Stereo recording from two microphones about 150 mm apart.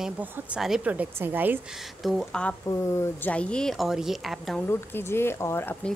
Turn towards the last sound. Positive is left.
turn(degrees=15)  # may be behind; listen again after turning